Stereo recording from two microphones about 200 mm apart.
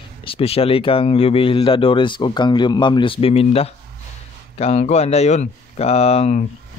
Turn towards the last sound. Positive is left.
turn(degrees=30)  # may be behind; listen again after turning